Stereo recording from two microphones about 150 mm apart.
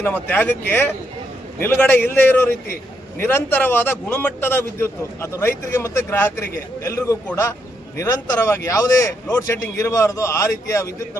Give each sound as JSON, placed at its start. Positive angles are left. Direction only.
{"t": 0.0, "sound": "a man's voice", "side_deg": 10}